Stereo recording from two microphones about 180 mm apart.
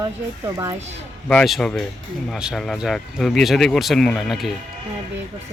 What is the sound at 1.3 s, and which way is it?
Speech, 5° left (ahead or behind).